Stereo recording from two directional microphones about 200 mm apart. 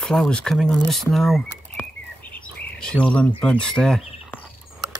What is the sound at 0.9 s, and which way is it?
Bird, centre (ahead or behind).